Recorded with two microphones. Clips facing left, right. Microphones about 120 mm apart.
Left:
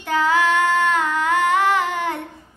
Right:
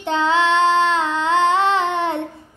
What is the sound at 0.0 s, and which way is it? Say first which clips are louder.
Child singing: right 1 dB; 25° right (ahead or behind).